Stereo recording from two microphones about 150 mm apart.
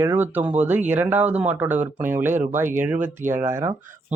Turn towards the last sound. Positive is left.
turn(degrees=-20)  # may be behind; listen again after turning